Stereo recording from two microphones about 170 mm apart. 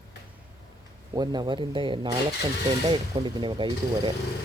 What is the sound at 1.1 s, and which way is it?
Speech, 25° right (ahead or behind).